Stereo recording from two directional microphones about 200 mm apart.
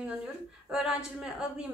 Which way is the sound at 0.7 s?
5° right (ahead or behind).